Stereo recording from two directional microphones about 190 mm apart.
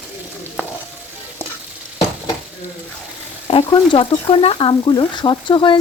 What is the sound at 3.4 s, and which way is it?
Speech, 25° left (ahead or behind).